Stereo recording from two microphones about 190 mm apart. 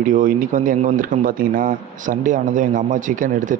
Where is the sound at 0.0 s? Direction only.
45° right (ahead or behind).